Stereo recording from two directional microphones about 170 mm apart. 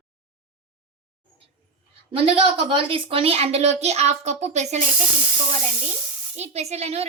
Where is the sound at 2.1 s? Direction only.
35° right (ahead or behind).